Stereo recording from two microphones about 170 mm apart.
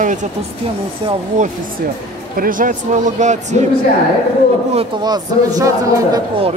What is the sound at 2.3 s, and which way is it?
Speech, 55° right (ahead or behind).